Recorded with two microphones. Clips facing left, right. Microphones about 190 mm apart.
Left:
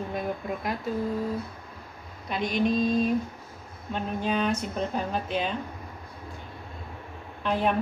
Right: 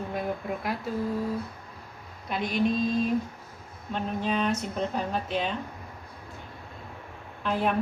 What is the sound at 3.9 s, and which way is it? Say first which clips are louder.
A woman's voice: left 1 dB; centre (ahead or behind).